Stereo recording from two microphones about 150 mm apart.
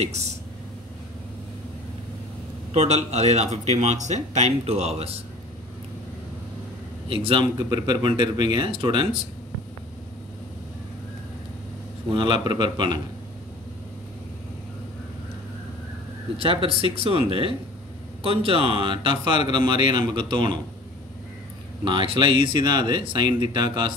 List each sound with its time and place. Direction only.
0.0 s speech: 45° right (ahead or behind)
2.7 s speech: 45° right (ahead or behind)
7.1 s speech: 40° right (ahead or behind)
12.1 s speech: 35° right (ahead or behind)
16.9 s speech: 40° right (ahead or behind)
21.8 s speech: 35° right (ahead or behind)